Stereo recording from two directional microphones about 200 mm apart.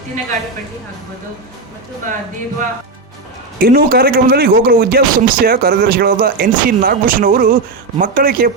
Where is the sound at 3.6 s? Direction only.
50° right (ahead or behind).